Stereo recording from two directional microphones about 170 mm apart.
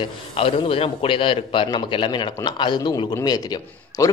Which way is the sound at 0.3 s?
35° left (ahead or behind).